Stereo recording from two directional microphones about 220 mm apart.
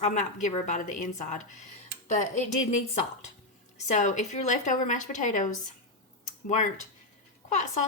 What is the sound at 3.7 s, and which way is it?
A woman's voice, 35° left (ahead or behind).